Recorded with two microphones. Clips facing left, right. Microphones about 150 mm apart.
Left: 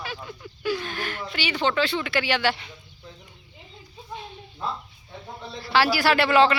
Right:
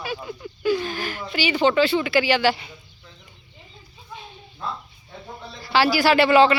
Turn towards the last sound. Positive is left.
turn(degrees=0)  # may be behind; listen again after turning